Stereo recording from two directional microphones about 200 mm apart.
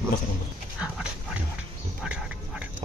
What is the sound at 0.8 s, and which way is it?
Dog, 5° right (ahead or behind).